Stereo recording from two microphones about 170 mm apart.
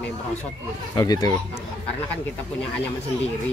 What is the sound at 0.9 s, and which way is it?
Speech, 25° left (ahead or behind).